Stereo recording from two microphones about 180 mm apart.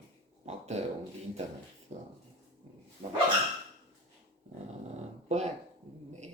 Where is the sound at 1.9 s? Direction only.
40° right (ahead or behind).